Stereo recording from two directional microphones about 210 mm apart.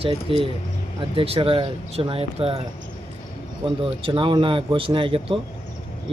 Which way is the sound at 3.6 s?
25° right (ahead or behind).